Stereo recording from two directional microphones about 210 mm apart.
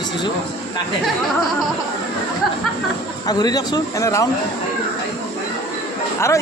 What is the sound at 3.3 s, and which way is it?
Speech, 20° left (ahead or behind).